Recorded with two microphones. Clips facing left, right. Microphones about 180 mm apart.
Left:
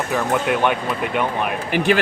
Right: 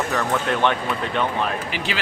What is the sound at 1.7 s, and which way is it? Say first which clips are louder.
Speech: left 10 dB; 55° left (ahead or behind).